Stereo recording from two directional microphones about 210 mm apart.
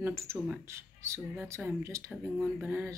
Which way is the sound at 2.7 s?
10° right (ahead or behind).